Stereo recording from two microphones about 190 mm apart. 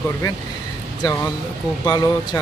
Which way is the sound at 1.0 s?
20° left (ahead or behind).